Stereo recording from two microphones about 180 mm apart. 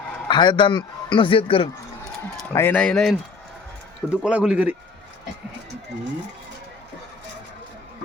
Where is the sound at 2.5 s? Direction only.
10° left (ahead or behind).